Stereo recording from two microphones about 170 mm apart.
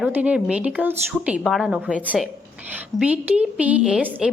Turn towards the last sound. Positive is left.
turn(degrees=-5)  # may be behind; listen again after turning